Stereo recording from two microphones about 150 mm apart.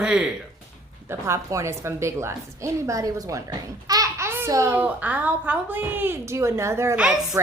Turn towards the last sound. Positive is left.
turn(degrees=-5)  # may be behind; listen again after turning